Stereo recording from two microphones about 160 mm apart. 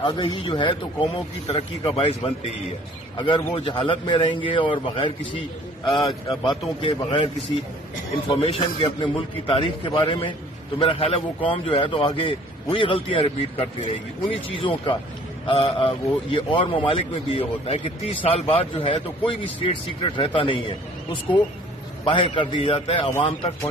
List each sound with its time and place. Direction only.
0.0 s a man's voice: 30° left (ahead or behind)
8.3 s a man's voice: 35° left (ahead or behind)